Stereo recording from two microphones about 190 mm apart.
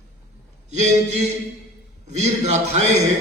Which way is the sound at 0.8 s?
35° right (ahead or behind).